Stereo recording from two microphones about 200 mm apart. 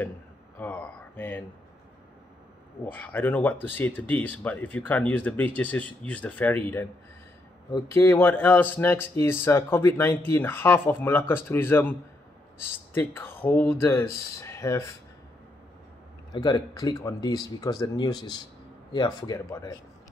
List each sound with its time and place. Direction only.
0.6 s speech: 10° left (ahead or behind)
2.8 s speech: 10° left (ahead or behind)
16.3 s speech: 20° left (ahead or behind)